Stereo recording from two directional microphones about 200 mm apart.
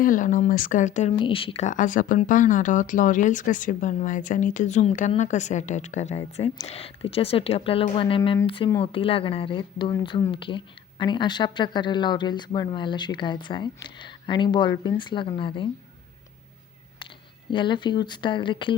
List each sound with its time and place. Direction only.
0.0 s speech: 40° left (ahead or behind)
1.2 s speech: 25° left (ahead or behind)
17.5 s speech: 25° left (ahead or behind)